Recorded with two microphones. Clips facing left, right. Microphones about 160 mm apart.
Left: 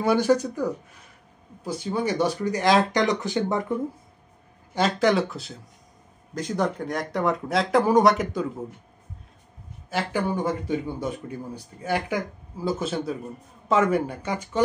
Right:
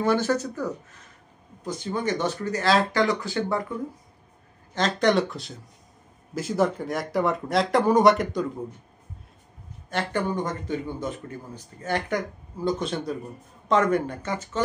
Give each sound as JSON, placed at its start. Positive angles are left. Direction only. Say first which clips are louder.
{"t": 0.0, "sound": "speech", "louder": "left 3 dB", "side_deg": 10}
{"t": 4.7, "sound": "speech", "louder": "left 1 dB", "side_deg": 5}
{"t": 9.8, "sound": "speech", "louder": "left 1 dB", "side_deg": 5}